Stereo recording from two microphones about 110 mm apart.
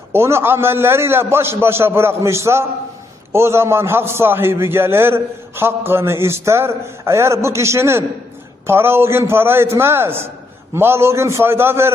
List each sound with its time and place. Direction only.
0.1 s a man's voice: 25° right (ahead or behind)